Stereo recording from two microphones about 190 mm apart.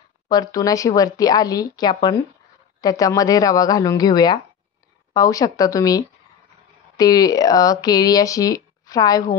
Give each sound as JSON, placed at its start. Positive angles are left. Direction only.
{"t": 0.3, "sound": "speech", "side_deg": 20}